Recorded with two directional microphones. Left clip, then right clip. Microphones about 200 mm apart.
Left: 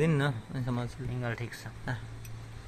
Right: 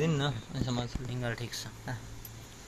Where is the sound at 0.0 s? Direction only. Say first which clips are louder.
Left 2 dB; 10° left (ahead or behind).